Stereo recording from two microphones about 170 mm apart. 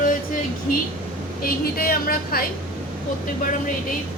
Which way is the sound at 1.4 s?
60° left (ahead or behind).